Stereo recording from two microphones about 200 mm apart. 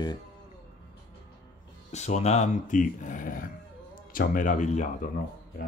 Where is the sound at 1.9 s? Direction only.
35° left (ahead or behind).